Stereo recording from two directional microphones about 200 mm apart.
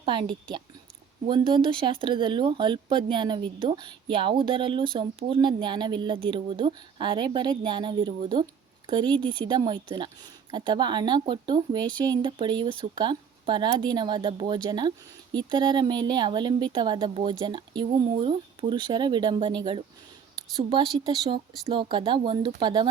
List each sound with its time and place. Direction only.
0.0 s speech: 25° right (ahead or behind)